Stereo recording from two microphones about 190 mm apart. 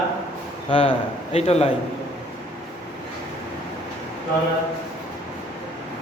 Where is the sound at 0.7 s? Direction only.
30° left (ahead or behind).